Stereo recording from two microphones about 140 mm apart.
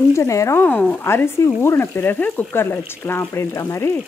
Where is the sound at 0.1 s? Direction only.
20° left (ahead or behind).